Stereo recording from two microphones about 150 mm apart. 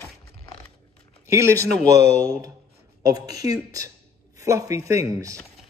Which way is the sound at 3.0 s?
25° right (ahead or behind).